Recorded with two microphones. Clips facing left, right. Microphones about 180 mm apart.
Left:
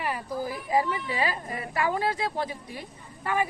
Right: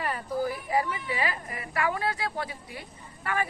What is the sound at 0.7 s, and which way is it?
A woman's voice, 20° left (ahead or behind).